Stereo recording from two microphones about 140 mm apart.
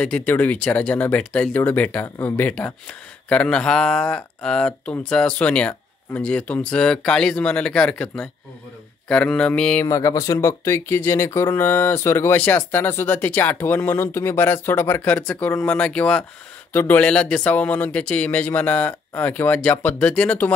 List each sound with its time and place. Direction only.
0.0 s speech: 10° left (ahead or behind)
9.8 s speech: 20° left (ahead or behind)